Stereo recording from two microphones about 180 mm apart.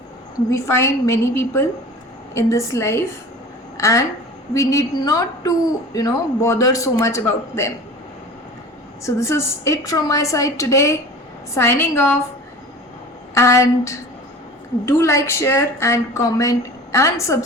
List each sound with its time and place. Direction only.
0.5 s speech: 15° left (ahead or behind)
9.0 s speech: 15° left (ahead or behind)
13.3 s speech: 15° left (ahead or behind)